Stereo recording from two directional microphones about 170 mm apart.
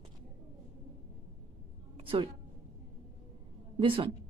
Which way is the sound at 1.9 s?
30° right (ahead or behind).